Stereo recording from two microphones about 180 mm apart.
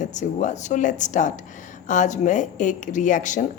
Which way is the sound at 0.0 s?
40° left (ahead or behind).